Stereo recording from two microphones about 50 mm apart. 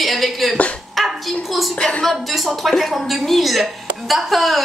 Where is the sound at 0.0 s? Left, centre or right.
Centre.